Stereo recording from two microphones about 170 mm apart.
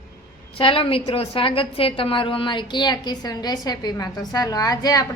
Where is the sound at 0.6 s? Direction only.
30° left (ahead or behind).